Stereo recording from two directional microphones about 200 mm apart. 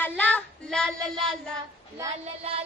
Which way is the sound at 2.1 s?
30° right (ahead or behind).